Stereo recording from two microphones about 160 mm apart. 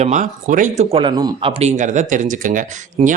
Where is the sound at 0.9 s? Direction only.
35° right (ahead or behind).